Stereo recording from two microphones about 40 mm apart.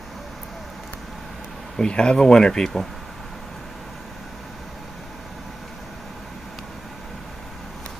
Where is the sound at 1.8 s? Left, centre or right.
Left.